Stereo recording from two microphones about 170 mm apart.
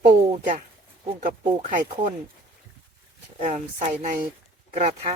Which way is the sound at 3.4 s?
45° right (ahead or behind).